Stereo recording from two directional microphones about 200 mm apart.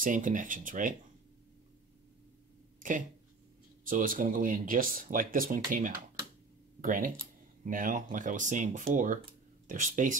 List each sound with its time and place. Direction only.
0.0 s speech: 40° right (ahead or behind)
3.8 s speech: 45° right (ahead or behind)